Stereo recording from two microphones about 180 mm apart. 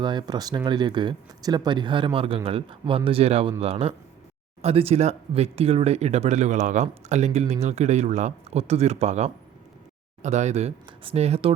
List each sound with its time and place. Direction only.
0.0 s speech: 25° right (ahead or behind)